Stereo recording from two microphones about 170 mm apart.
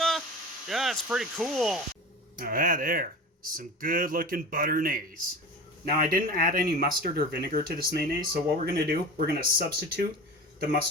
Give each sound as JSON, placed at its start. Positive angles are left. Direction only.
{"t": 0.7, "sound": "speech", "side_deg": 0}
{"t": 2.4, "sound": "speech", "side_deg": -55}